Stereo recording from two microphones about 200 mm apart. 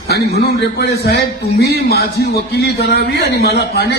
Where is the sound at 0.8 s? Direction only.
55° left (ahead or behind).